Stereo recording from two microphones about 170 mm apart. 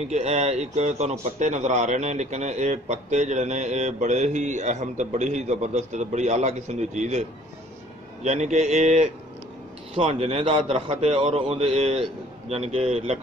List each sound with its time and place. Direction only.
0.0 s a man's voice: 40° right (ahead or behind)